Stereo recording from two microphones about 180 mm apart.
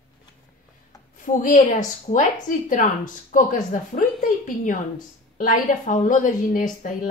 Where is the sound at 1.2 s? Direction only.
45° left (ahead or behind).